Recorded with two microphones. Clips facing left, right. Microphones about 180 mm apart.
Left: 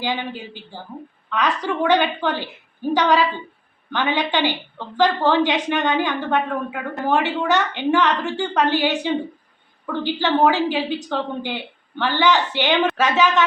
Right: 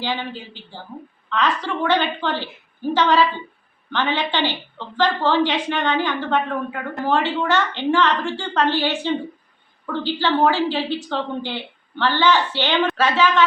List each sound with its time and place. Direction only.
0.0 s a woman's voice: 15° left (ahead or behind)